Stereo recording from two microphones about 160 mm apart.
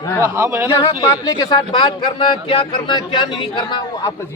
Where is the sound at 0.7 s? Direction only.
20° left (ahead or behind).